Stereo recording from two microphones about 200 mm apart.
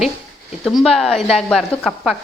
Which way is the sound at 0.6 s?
Centre (ahead or behind).